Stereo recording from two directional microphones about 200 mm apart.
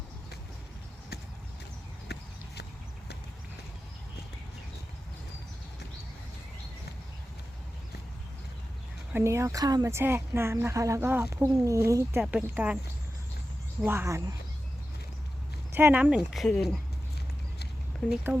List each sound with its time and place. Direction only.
2.1 s clip-clop: 55° left (ahead or behind)
9.1 s speech: 15° right (ahead or behind)
13.8 s speech: 15° right (ahead or behind)
15.7 s speech: 10° right (ahead or behind)
18.1 s speech: 10° right (ahead or behind)